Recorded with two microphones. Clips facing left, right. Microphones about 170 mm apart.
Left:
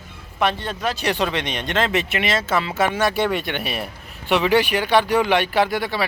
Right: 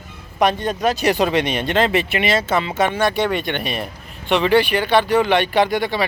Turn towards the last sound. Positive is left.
turn(degrees=5)  # may be behind; listen again after turning